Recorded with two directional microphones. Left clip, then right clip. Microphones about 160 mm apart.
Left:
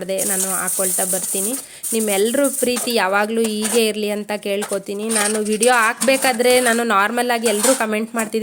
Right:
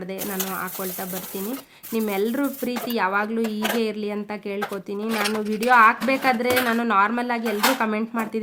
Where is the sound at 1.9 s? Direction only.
25° left (ahead or behind).